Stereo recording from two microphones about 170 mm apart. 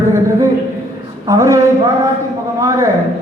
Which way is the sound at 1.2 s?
20° right (ahead or behind).